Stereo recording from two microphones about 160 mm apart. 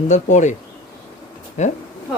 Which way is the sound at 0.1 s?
50° left (ahead or behind).